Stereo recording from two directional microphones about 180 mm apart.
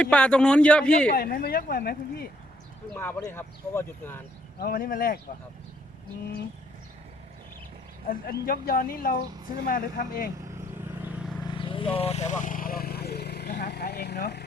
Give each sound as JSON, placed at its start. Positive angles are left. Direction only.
{"t": 0.0, "sound": "speech", "side_deg": 5}
{"t": 1.1, "sound": "speech", "side_deg": 55}
{"t": 2.9, "sound": "speech", "side_deg": 10}
{"t": 4.6, "sound": "speech", "side_deg": 50}
{"t": 8.1, "sound": "speech", "side_deg": 55}
{"t": 11.4, "sound": "vehicle", "side_deg": 30}